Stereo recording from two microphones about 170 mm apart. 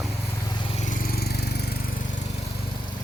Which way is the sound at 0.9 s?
60° left (ahead or behind).